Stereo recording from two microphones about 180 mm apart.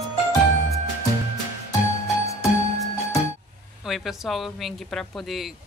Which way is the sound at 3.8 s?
Centre (ahead or behind).